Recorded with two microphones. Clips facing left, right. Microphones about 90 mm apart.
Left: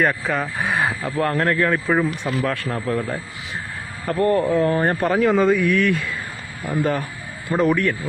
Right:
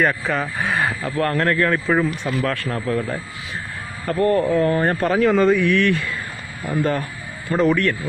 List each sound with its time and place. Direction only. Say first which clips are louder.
0.0 s speech: even; centre (ahead or behind)
0.7 s speech: even; 15° left (ahead or behind)
4.1 s a man's voice: even; 25° left (ahead or behind)
5.1 s speech: right 1 dB; 5° left (ahead or behind)
6.7 s speech: even; 15° left (ahead or behind)